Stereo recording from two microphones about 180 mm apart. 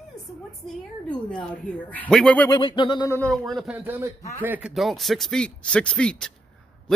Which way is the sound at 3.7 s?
15° right (ahead or behind).